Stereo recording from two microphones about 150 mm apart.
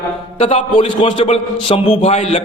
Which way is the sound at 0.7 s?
35° left (ahead or behind).